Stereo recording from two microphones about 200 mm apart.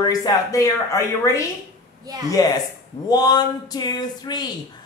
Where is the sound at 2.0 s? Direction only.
20° right (ahead or behind).